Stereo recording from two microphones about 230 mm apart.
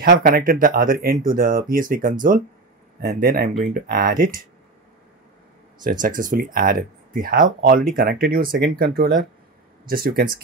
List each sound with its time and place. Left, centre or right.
0.0 s speech: right
5.9 s speech: right